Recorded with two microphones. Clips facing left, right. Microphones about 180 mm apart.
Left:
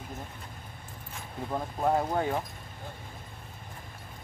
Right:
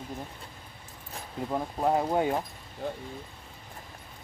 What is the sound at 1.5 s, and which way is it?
Speech, 10° right (ahead or behind).